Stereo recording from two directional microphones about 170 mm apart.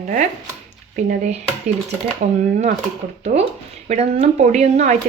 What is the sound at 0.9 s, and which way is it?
Speech, 50° right (ahead or behind).